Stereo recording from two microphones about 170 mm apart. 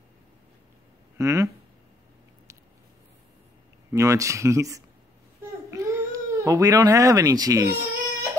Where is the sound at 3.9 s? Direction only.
20° right (ahead or behind).